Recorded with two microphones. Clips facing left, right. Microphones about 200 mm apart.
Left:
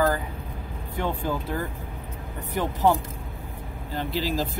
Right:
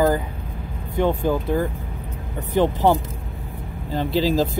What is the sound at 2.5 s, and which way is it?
Speech, 30° right (ahead or behind).